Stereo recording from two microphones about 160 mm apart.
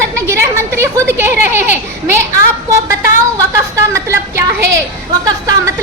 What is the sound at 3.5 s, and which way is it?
A child's voice, 20° right (ahead or behind).